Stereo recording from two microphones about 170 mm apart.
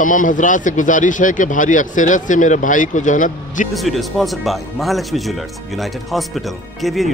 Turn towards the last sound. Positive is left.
turn(degrees=0)  # may be behind; listen again after turning